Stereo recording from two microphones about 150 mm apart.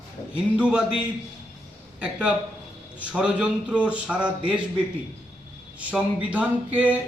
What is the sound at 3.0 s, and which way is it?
A man's voice, 10° right (ahead or behind).